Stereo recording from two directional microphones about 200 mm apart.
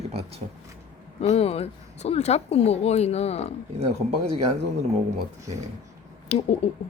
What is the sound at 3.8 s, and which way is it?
Speech, 30° right (ahead or behind).